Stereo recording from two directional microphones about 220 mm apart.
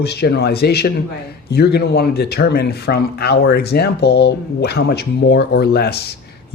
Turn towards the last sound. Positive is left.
turn(degrees=45)  # may be behind; listen again after turning